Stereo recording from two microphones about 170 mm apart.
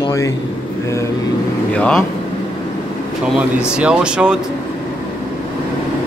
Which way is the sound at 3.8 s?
5° right (ahead or behind).